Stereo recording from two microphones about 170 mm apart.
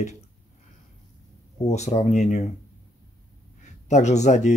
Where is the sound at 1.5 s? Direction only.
40° left (ahead or behind).